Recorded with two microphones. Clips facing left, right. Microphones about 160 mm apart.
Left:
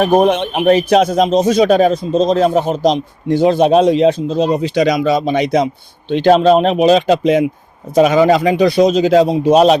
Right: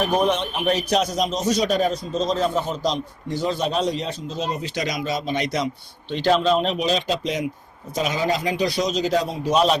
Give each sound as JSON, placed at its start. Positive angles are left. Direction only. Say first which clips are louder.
{"t": 0.0, "sound": "a man's voice", "louder": "left 9 dB", "side_deg": 55}
{"t": 9.2, "sound": "a man's voice", "louder": "left 12 dB", "side_deg": 20}
{"t": 9.5, "sound": "a man's voice", "louder": "left 8 dB", "side_deg": 65}